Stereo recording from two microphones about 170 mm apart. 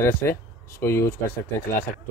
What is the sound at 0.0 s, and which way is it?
Speech, 15° left (ahead or behind).